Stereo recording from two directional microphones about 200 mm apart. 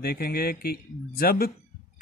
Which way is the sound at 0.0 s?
50° left (ahead or behind).